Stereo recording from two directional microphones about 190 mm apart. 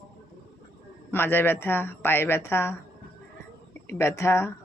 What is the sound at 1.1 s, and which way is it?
Speech, 10° left (ahead or behind).